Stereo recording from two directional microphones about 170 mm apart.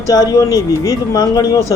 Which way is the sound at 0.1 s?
20° left (ahead or behind).